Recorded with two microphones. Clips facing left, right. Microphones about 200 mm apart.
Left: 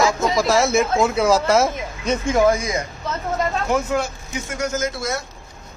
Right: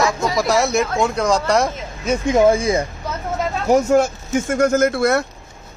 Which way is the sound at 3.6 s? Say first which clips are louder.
Right 12 dB; 40° right (ahead or behind).